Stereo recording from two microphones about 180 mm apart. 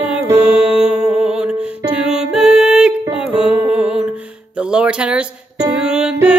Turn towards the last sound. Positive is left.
turn(degrees=-5)  # may be behind; listen again after turning